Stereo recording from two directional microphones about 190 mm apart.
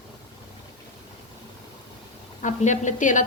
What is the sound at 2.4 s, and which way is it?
Speech, 40° left (ahead or behind).